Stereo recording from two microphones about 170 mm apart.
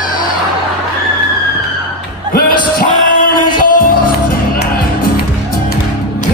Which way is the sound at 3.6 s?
60° left (ahead or behind).